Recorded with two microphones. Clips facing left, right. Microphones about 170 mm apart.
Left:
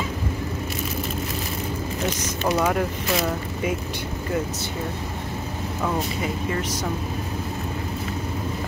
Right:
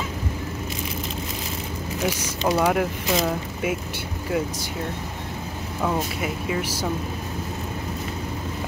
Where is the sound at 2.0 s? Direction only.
10° right (ahead or behind).